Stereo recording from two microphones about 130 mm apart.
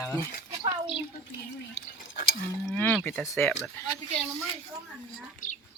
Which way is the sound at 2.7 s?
10° left (ahead or behind).